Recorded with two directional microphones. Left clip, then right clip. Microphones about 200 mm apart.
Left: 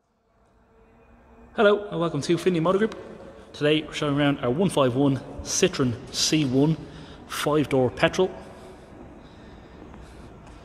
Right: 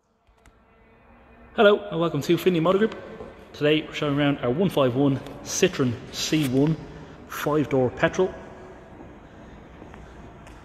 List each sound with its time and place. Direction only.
1.5 s a man's voice: 10° right (ahead or behind)